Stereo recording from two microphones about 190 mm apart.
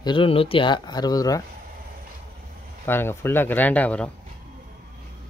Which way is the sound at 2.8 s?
10° left (ahead or behind).